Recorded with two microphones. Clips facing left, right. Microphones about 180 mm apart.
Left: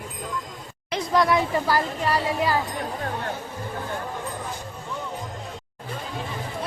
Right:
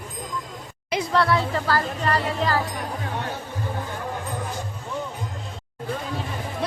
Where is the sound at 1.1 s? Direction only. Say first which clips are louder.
Left 2 dB; 15° left (ahead or behind).